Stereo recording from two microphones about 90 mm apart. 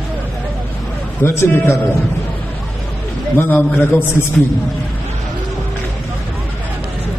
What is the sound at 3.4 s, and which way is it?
Speech, 20° left (ahead or behind).